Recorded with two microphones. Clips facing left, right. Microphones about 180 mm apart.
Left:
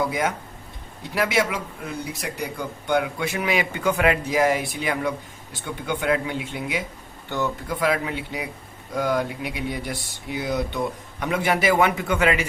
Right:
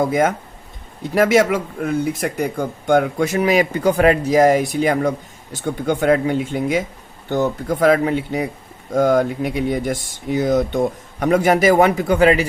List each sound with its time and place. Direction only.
0.0 s speech: 45° right (ahead or behind)